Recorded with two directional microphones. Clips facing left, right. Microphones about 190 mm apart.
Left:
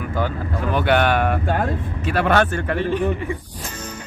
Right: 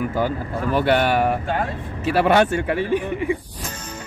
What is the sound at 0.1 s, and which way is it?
A man's voice, 5° right (ahead or behind).